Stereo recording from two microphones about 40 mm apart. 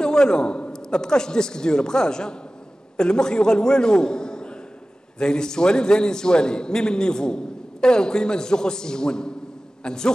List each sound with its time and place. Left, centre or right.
0.0 s a man's voice: centre